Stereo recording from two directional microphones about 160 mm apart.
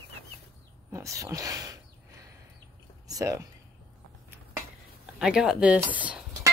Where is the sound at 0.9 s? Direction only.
20° right (ahead or behind).